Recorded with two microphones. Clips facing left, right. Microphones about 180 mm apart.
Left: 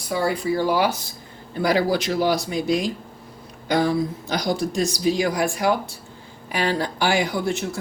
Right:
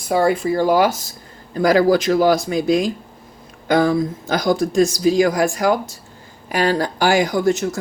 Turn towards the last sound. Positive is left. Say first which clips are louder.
# right 6 dB
turn(degrees=-45)  # may be behind; listen again after turning